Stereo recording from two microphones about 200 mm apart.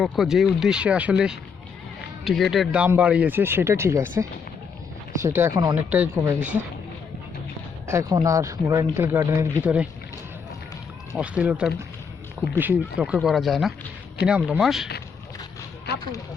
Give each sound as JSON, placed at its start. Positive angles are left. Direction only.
{"t": 0.0, "sound": "speech", "side_deg": 0}
{"t": 5.9, "sound": "speech", "side_deg": -5}
{"t": 7.9, "sound": "speech", "side_deg": -15}
{"t": 11.2, "sound": "speech", "side_deg": -5}